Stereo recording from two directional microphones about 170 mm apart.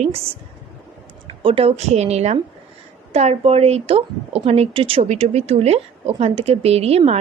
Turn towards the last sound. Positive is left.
turn(degrees=-40)  # may be behind; listen again after turning